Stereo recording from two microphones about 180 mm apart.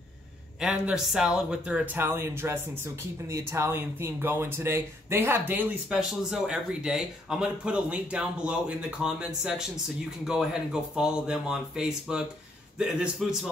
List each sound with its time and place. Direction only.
0.6 s speech: 5° right (ahead or behind)